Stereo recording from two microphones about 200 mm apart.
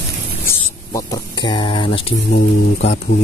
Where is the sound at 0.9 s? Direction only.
20° left (ahead or behind).